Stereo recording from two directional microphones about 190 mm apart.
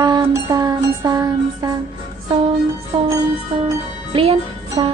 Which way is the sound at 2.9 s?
25° right (ahead or behind).